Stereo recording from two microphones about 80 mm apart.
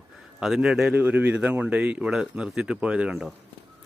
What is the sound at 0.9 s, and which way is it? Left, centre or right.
Speech, right.